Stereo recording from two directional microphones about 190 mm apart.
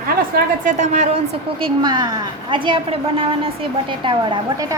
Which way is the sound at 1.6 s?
20° right (ahead or behind).